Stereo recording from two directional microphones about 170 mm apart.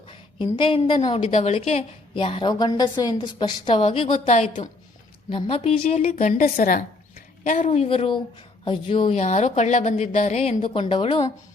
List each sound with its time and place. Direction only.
0.1 s a woman's voice: 30° left (ahead or behind)
0.9 s speech: 40° left (ahead or behind)
2.2 s a woman's voice: 30° left (ahead or behind)
4.0 s speech: 45° left (ahead or behind)
6.1 s a woman's voice: 50° left (ahead or behind); by 11.3 s 30° left (ahead or behind)